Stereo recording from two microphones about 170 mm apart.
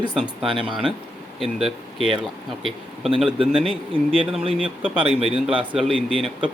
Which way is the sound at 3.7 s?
35° right (ahead or behind).